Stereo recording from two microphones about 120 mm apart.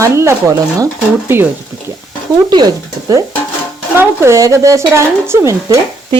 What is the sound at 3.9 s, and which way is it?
Speech, 25° right (ahead or behind).